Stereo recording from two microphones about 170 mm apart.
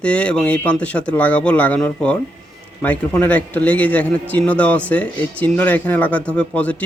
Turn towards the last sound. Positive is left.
turn(degrees=10)  # may be behind; listen again after turning